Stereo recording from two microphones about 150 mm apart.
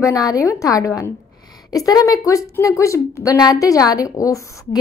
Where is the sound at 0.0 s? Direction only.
25° left (ahead or behind).